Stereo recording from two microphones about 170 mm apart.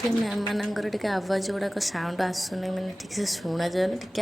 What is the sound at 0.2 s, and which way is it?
A woman's voice, centre (ahead or behind).